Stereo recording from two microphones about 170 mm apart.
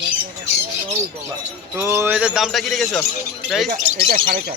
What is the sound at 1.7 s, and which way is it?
Speech, 15° right (ahead or behind).